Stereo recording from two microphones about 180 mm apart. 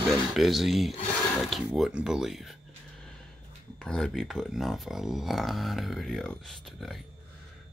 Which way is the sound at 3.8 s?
5° left (ahead or behind).